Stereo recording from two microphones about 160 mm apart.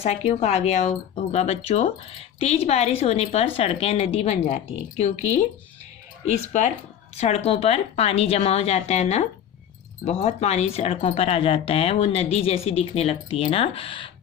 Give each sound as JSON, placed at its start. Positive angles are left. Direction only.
{"t": 0.0, "sound": "speech", "side_deg": 40}
{"t": 7.2, "sound": "speech", "side_deg": 40}